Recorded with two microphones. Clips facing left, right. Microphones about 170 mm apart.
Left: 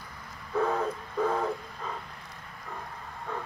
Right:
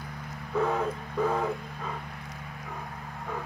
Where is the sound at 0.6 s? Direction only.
5° right (ahead or behind).